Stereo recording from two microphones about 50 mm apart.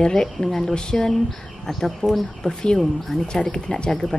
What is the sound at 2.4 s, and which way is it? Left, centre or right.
Speech, centre.